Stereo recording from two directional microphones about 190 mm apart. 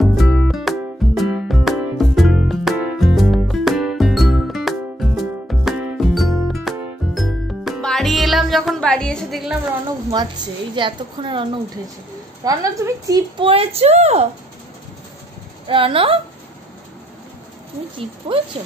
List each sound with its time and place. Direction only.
0.0 s music: centre (ahead or behind)
10.1 s a woman's voice: 20° right (ahead or behind)
13.5 s speech: 30° right (ahead or behind)
15.6 s a woman's voice: 30° right (ahead or behind)
17.9 s a woman's voice: 30° right (ahead or behind)